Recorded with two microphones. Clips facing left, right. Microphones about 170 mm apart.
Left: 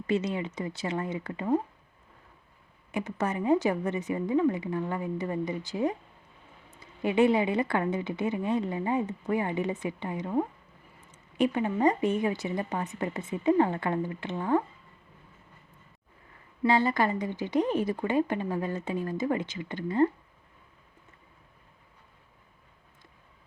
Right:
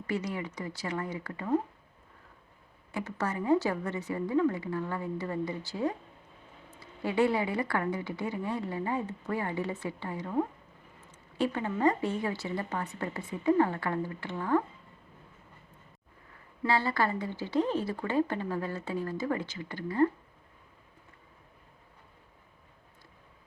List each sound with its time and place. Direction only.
0.1 s speech: 25° left (ahead or behind)
2.9 s speech: 20° left (ahead or behind)
16.6 s a woman's voice: 20° left (ahead or behind)